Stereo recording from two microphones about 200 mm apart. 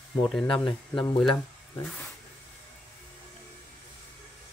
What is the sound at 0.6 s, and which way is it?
Speech, 25° left (ahead or behind).